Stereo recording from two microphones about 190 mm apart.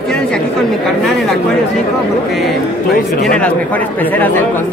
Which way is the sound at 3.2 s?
5° left (ahead or behind).